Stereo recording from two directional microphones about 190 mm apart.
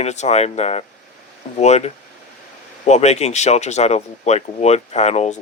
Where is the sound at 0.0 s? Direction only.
35° left (ahead or behind).